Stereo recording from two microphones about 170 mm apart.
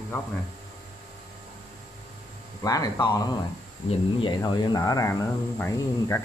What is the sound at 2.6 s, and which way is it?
Speech, 20° left (ahead or behind).